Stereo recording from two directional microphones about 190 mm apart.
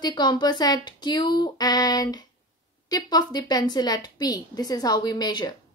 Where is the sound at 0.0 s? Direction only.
20° left (ahead or behind).